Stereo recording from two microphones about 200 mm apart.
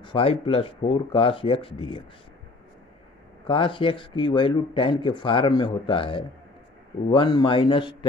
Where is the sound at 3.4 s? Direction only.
25° left (ahead or behind).